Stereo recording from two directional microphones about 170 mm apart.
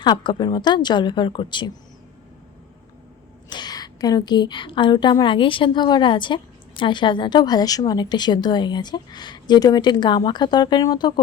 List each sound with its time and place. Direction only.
0.0 s a woman's voice: 25° left (ahead or behind)
3.5 s a woman's voice: 25° left (ahead or behind)